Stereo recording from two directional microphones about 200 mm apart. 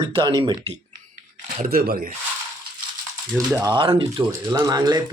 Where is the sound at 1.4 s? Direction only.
45° right (ahead or behind).